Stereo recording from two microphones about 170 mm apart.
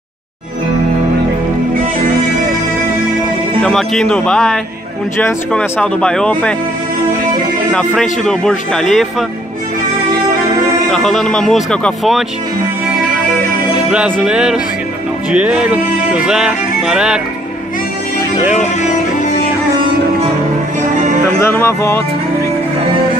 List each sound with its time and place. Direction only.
3.6 s music: 5° left (ahead or behind)
7.7 s music: centre (ahead or behind)
10.9 s music: centre (ahead or behind)
13.8 s music: 5° right (ahead or behind)
20.9 s music: 45° right (ahead or behind)
21.4 s speech: 15° left (ahead or behind)